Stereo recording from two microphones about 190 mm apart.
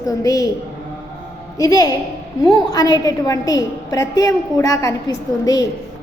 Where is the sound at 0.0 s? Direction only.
20° left (ahead or behind).